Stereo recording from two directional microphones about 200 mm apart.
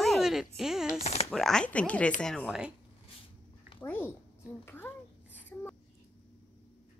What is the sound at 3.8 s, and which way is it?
A child's voice, 10° left (ahead or behind).